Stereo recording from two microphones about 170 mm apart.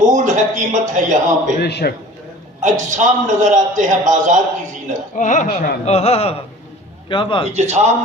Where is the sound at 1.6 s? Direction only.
75° left (ahead or behind).